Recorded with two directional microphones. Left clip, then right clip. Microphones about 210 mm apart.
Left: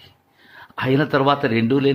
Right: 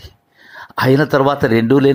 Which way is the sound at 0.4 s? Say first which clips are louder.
Right 8 dB; 25° right (ahead or behind).